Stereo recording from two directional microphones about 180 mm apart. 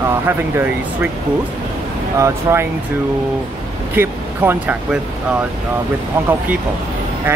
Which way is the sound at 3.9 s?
10° right (ahead or behind).